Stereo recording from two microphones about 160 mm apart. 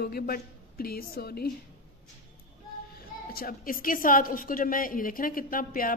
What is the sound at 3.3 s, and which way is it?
A woman's voice, 65° left (ahead or behind).